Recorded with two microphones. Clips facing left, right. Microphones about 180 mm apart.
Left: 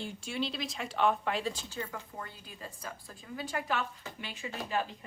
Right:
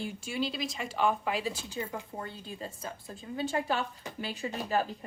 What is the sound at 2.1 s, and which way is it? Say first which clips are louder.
A woman's voice: right 5 dB; 30° right (ahead or behind).